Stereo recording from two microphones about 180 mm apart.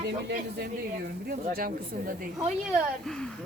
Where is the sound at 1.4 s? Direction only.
55° right (ahead or behind).